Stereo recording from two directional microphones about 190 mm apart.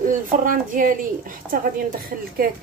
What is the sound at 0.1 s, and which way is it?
A woman's voice, 45° right (ahead or behind).